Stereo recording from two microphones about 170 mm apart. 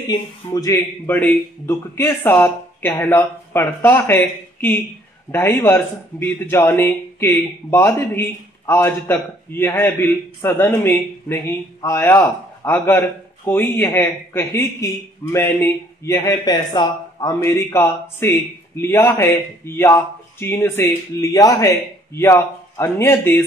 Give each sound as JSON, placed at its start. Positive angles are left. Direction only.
{"t": 0.1, "sound": "speech", "side_deg": 20}